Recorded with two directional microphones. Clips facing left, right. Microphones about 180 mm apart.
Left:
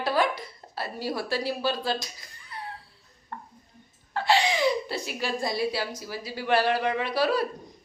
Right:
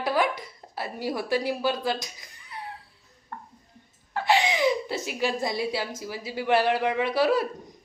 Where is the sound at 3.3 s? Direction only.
5° right (ahead or behind).